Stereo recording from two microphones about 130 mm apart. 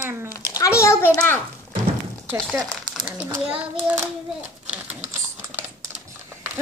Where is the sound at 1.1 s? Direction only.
15° left (ahead or behind).